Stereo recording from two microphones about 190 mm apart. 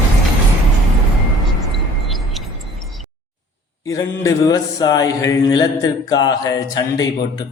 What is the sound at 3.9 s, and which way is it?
Mantra, 15° left (ahead or behind).